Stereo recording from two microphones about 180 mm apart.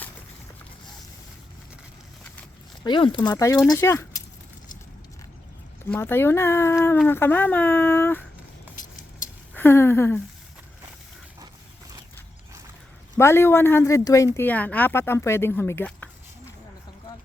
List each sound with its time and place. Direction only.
2.8 s speech: 25° left (ahead or behind)
5.9 s speech: 10° left (ahead or behind)
8.7 s a sound: 20° left (ahead or behind)
13.1 s speech: 15° left (ahead or behind)